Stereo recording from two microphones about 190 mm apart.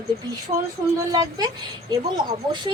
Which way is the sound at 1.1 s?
20° right (ahead or behind).